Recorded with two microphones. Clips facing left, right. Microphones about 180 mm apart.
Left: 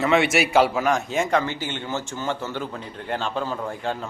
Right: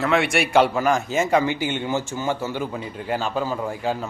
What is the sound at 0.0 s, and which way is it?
A man's voice, centre (ahead or behind).